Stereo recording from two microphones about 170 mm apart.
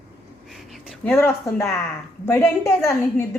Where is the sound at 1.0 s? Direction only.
10° left (ahead or behind).